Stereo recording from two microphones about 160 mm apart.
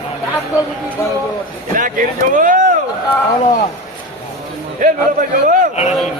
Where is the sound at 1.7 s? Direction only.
55° right (ahead or behind).